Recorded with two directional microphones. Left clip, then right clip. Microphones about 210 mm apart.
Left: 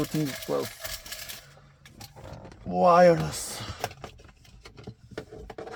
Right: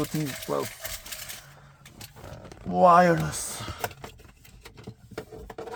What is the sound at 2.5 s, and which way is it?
Speech, 25° right (ahead or behind).